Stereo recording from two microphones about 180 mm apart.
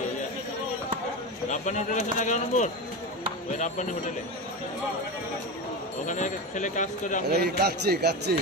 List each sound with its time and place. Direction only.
1.5 s speech: 45° left (ahead or behind)
6.0 s speech: 45° left (ahead or behind)
7.2 s speech: 65° right (ahead or behind)